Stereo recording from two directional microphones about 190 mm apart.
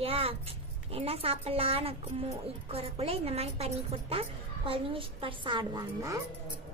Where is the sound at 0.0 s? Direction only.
30° right (ahead or behind).